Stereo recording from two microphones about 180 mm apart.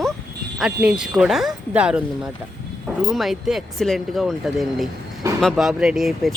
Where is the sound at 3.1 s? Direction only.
Centre (ahead or behind).